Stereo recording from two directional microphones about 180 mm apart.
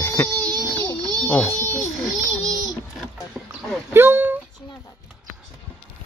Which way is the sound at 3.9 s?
10° right (ahead or behind).